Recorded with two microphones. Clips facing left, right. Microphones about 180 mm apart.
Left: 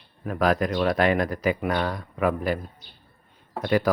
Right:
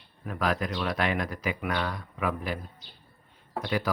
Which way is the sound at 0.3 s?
45° left (ahead or behind).